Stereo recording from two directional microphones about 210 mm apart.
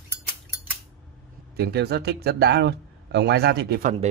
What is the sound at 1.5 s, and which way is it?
Speech, 50° right (ahead or behind).